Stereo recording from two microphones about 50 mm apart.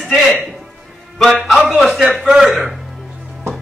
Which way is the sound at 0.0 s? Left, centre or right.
Centre.